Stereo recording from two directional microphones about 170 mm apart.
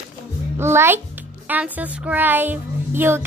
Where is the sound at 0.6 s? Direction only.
15° right (ahead or behind).